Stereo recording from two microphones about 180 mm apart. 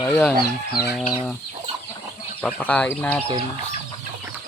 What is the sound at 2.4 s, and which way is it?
Speech, 5° left (ahead or behind).